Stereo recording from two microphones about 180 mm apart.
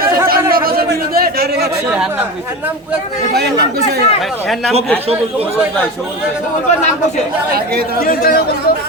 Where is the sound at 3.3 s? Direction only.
60° right (ahead or behind).